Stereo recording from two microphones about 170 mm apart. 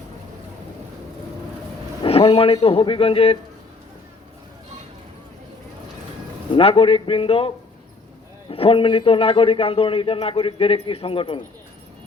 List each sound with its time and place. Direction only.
2.0 s speech: 35° left (ahead or behind)
6.5 s a man's voice: 35° left (ahead or behind)